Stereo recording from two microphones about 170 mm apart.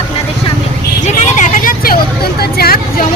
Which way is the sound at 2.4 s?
65° left (ahead or behind).